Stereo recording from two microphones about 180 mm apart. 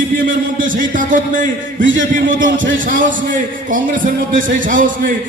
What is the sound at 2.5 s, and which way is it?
Speech, 90° right.